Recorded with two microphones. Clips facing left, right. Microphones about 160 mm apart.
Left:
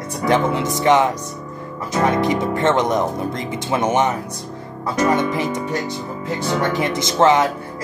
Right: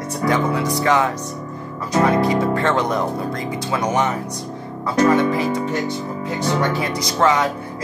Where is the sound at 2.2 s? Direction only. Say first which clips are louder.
Right 1 dB; 20° left (ahead or behind).